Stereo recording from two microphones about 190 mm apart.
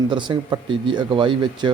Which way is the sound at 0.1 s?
25° right (ahead or behind).